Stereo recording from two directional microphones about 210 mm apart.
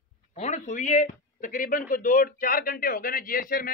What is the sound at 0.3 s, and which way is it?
A man's voice, 35° left (ahead or behind).